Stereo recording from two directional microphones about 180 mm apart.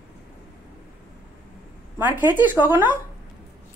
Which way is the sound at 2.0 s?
10° right (ahead or behind).